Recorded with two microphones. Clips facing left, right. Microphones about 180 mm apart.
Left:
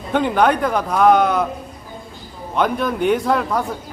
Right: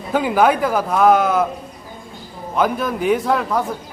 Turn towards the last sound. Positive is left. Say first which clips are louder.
# even
turn(degrees=0)  # may be behind; listen again after turning